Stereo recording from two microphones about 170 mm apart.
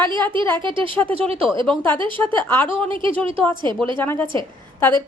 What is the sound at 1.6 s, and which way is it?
Speech, 10° left (ahead or behind).